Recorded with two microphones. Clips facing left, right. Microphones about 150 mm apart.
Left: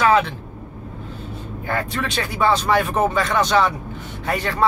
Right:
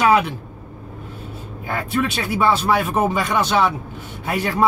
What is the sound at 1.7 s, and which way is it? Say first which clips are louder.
Speech: right 3 dB; 5° right (ahead or behind).